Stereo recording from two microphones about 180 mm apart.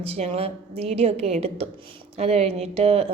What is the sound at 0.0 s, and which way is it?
Speech, 35° right (ahead or behind).